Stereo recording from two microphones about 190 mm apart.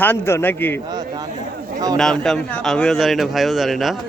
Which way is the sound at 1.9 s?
Centre (ahead or behind).